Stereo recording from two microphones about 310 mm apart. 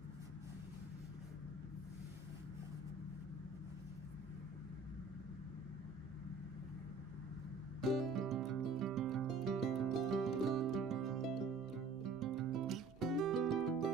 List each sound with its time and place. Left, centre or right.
7.9 s music: centre